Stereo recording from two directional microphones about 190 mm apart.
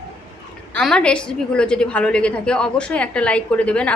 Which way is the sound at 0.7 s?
5° left (ahead or behind).